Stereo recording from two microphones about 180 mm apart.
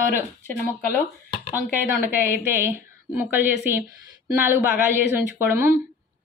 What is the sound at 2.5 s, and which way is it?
Speech, 10° right (ahead or behind).